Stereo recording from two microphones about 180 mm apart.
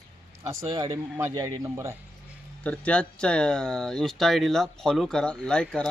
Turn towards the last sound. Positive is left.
turn(degrees=5)  # may be behind; listen again after turning